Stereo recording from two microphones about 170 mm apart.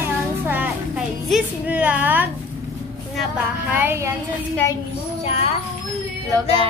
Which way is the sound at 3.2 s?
10° right (ahead or behind).